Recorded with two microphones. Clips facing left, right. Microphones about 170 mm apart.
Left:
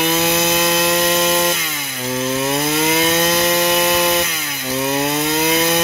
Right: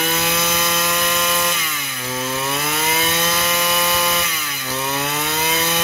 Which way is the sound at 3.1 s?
40° left (ahead or behind).